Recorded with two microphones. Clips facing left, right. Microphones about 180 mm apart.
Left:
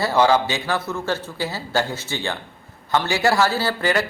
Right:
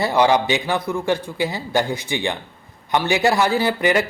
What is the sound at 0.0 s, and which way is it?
Speech, 15° right (ahead or behind).